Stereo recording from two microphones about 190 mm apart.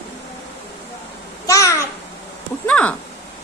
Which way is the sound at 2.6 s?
5° left (ahead or behind).